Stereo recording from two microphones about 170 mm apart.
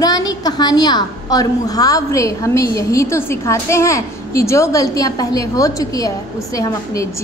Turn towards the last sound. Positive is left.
turn(degrees=20)  # may be behind; listen again after turning